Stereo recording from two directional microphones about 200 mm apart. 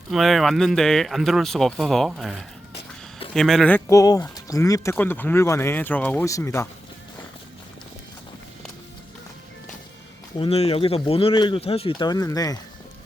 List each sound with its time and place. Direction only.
0.1 s speech: centre (ahead or behind)
3.3 s speech: centre (ahead or behind)
10.3 s speech: 30° left (ahead or behind)